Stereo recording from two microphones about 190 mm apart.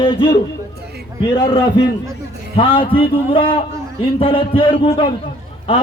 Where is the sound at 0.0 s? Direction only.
25° left (ahead or behind).